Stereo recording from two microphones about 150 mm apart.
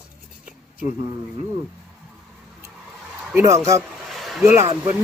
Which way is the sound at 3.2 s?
10° right (ahead or behind).